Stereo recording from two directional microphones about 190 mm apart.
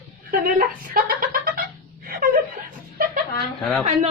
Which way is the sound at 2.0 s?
50° right (ahead or behind).